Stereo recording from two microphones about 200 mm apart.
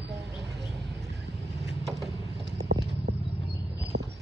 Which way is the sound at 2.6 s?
55° right (ahead or behind).